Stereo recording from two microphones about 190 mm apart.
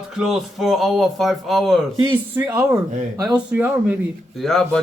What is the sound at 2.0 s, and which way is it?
A man's voice, 10° right (ahead or behind).